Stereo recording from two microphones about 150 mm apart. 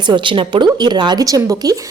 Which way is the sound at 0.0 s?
30° right (ahead or behind).